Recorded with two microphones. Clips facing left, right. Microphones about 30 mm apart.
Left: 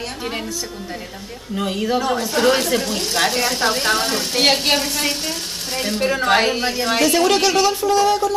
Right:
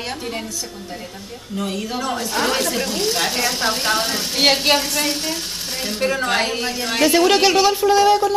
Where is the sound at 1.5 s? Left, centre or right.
Centre.